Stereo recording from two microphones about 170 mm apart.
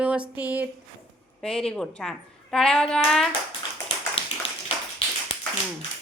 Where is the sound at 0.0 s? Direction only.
5° right (ahead or behind).